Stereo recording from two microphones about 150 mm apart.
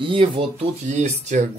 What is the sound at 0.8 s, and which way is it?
Speech, 50° right (ahead or behind).